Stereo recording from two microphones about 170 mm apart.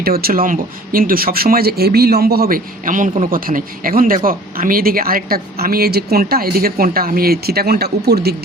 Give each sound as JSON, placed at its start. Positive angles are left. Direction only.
{"t": 0.0, "sound": "speech", "side_deg": -65}